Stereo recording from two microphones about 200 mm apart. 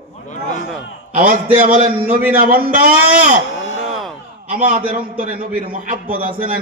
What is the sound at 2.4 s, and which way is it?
A man's voice, 45° right (ahead or behind).